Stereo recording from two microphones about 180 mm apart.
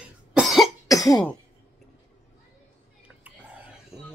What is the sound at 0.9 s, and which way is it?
Cough, 20° left (ahead or behind).